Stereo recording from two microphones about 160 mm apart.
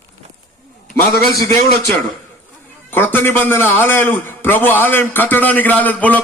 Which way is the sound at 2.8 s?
15° left (ahead or behind).